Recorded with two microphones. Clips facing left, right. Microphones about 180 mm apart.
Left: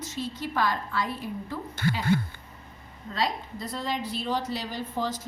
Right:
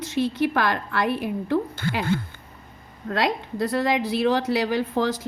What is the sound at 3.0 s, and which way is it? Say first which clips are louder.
Speech: right 6 dB; 70° right (ahead or behind).